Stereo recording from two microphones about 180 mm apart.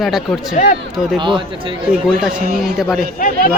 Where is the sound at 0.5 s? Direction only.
45° left (ahead or behind).